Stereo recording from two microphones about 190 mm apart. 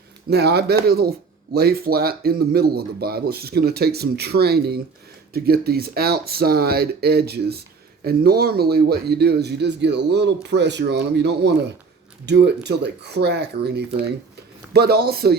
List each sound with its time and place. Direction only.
0.3 s speech: 60° right (ahead or behind)